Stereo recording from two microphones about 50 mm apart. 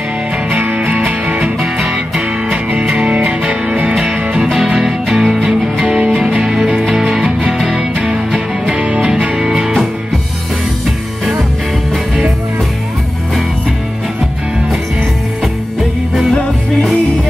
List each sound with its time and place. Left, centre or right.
0.5 s music: right
1.4 s music: centre
4.7 s music: centre
8.6 s music: right; by 9.8 s centre